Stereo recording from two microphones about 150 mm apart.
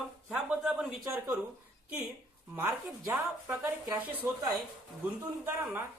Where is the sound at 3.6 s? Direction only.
15° right (ahead or behind).